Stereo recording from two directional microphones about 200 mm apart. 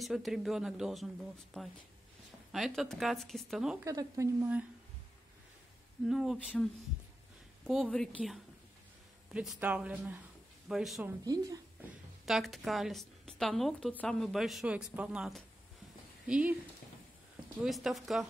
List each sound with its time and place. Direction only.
0.0 s a woman's voice: centre (ahead or behind)
3.8 s speech: 15° right (ahead or behind)
6.0 s a woman's voice: centre (ahead or behind)
11.2 s a woman's voice: 20° right (ahead or behind)
12.3 s a woman's voice: centre (ahead or behind)
17.6 s a woman's voice: centre (ahead or behind)